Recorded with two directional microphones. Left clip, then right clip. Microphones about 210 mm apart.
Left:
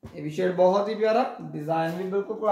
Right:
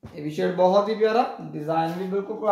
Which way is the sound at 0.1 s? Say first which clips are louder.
Right 1 dB; 5° left (ahead or behind).